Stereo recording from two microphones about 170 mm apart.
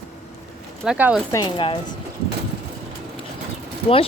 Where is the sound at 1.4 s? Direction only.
30° left (ahead or behind).